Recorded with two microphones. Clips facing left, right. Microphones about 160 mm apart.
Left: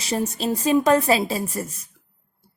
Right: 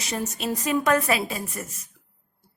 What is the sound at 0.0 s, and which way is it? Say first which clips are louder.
A woman's voice: left 5 dB; 30° left (ahead or behind).